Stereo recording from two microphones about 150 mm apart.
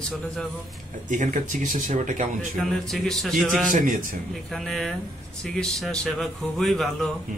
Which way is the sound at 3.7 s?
65° right (ahead or behind).